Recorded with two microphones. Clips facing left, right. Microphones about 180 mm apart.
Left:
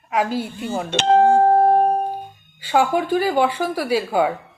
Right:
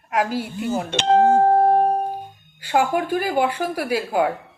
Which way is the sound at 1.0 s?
55° left (ahead or behind).